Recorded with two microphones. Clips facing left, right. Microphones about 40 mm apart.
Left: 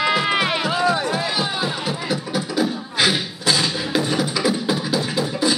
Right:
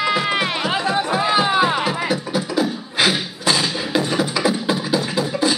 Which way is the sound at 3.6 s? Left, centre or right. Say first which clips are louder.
Right 1 dB; centre.